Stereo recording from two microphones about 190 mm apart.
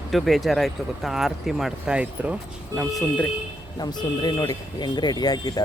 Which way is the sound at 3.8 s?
20° left (ahead or behind).